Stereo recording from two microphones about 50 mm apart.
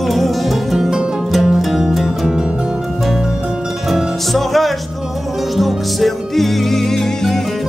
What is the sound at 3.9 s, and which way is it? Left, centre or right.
Music, centre.